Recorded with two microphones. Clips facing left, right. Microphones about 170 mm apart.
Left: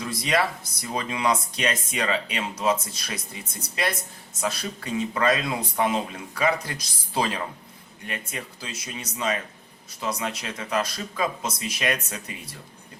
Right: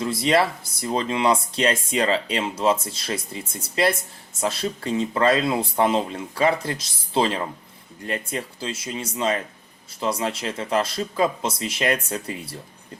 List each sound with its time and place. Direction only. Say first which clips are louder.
0.0 s speech: right 5 dB; 25° right (ahead or behind)